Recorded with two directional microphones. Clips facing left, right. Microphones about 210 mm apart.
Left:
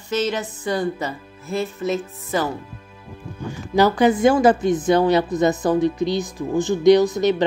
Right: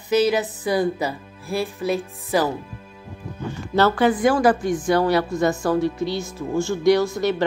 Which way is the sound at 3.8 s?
15° left (ahead or behind).